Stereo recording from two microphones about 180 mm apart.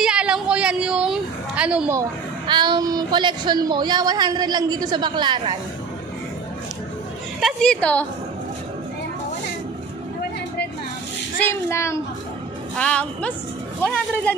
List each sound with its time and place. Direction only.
0.0 s a sound: 5° right (ahead or behind)
2.0 s a woman's voice: 25° right (ahead or behind)
7.3 s a woman's voice: centre (ahead or behind)
11.3 s a child's voice: 15° left (ahead or behind)